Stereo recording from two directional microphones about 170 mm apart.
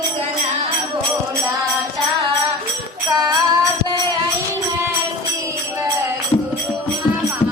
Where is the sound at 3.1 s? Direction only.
25° right (ahead or behind).